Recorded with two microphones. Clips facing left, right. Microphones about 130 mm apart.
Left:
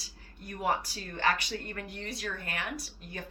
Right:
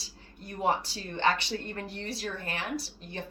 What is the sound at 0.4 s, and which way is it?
Speech, 30° right (ahead or behind).